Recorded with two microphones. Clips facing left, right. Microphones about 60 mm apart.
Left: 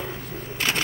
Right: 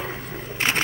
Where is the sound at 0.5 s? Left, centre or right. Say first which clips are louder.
Right 3 dB; right.